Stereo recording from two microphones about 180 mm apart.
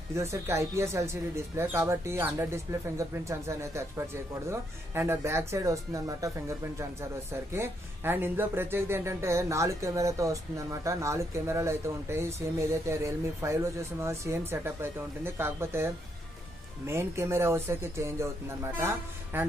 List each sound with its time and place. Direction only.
0.1 s speech: 15° right (ahead or behind)
7.5 s speech: 10° right (ahead or behind)